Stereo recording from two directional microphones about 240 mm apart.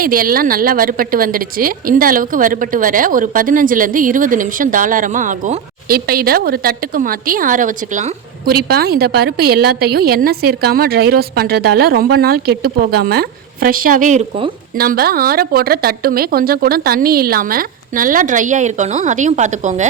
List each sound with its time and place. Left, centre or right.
0.0 s speech: right
14.8 s speech: right